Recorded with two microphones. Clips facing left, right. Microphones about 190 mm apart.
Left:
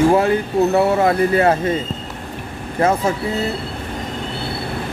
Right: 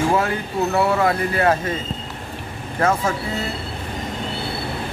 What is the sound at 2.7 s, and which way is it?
Speech, 20° left (ahead or behind).